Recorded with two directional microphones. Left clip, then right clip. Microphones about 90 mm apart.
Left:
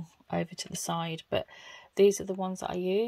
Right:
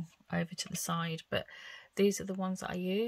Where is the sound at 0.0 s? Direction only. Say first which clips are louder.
Left 5 dB; 30° left (ahead or behind).